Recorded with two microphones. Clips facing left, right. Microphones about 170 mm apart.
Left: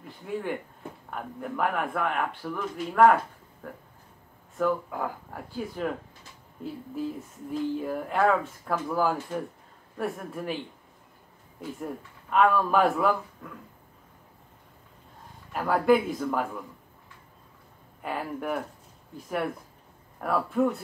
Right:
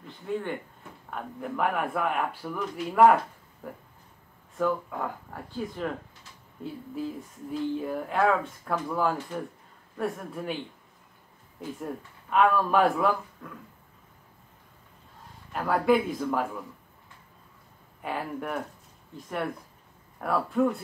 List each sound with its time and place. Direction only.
0.3 s speech: 5° left (ahead or behind)
4.6 s speech: centre (ahead or behind)
7.7 s speech: centre (ahead or behind)
11.8 s speech: centre (ahead or behind)
15.5 s speech: centre (ahead or behind)
18.0 s speech: centre (ahead or behind)